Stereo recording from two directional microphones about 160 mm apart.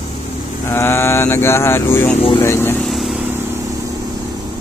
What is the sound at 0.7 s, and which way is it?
Speech, 15° left (ahead or behind).